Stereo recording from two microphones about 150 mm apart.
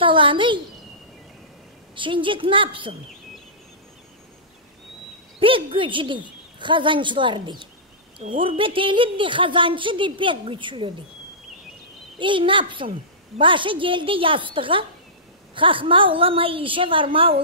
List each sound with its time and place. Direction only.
0.0 s a woman's voice: 35° right (ahead or behind)
2.0 s a woman's voice: 35° right (ahead or behind)
5.4 s a woman's voice: 35° right (ahead or behind)
12.2 s a woman's voice: 35° right (ahead or behind)